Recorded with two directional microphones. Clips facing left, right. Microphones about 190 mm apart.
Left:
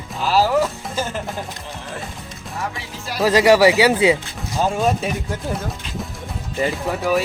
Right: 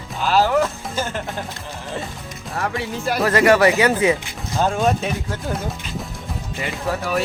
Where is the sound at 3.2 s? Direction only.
15° left (ahead or behind).